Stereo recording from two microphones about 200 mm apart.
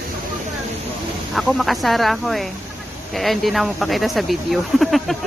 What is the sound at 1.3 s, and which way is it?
Speech, centre (ahead or behind).